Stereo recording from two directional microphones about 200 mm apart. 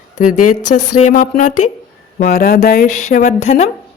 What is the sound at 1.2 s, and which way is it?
Speech, 40° left (ahead or behind).